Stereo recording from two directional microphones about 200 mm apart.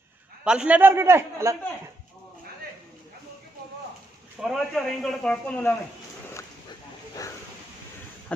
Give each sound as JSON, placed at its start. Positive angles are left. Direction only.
{"t": 0.4, "sound": "a man's voice", "side_deg": -5}
{"t": 4.4, "sound": "speech", "side_deg": 0}